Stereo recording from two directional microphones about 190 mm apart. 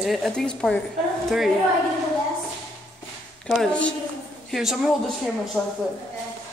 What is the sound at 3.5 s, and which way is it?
A woman's voice, 5° left (ahead or behind).